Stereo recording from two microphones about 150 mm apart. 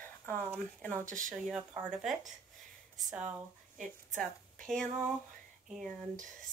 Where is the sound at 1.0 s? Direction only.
60° right (ahead or behind).